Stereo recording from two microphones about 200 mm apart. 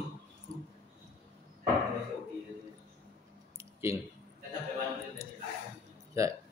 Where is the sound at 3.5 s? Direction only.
15° right (ahead or behind).